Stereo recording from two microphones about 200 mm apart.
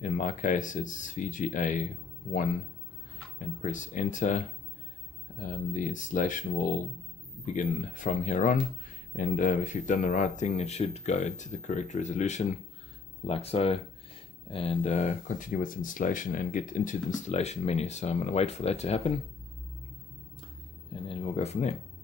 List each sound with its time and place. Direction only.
0.0 s speech: 40° left (ahead or behind)
3.6 s speech: 40° left (ahead or behind)
21.1 s speech: 30° left (ahead or behind)